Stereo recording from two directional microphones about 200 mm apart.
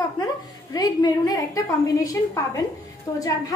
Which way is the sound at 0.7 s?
20° left (ahead or behind).